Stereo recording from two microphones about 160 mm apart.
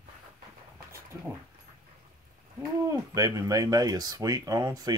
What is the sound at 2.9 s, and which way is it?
Speech, 20° right (ahead or behind).